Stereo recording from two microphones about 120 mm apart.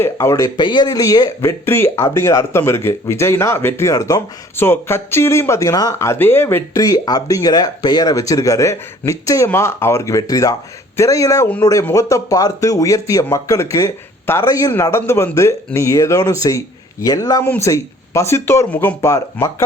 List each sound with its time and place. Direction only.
0.0 s speech: 25° left (ahead or behind)
19.0 s speech: 25° left (ahead or behind)